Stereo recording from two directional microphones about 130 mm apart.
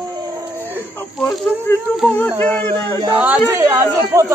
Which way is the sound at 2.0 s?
10° left (ahead or behind).